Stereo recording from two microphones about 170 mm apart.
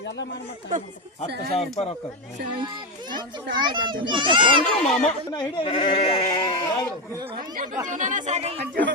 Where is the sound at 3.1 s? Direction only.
25° right (ahead or behind).